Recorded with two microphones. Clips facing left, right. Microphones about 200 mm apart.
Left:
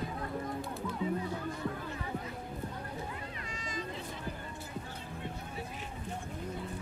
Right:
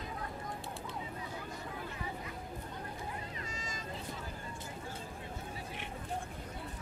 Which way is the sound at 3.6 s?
45° right (ahead or behind).